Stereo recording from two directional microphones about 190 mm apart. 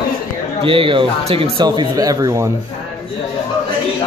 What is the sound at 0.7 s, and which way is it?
Speech, 25° right (ahead or behind).